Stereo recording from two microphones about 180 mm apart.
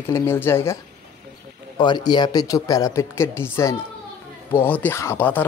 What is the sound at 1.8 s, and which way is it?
Speech, 25° left (ahead or behind).